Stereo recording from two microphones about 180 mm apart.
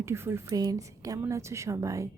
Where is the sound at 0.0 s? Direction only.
15° right (ahead or behind).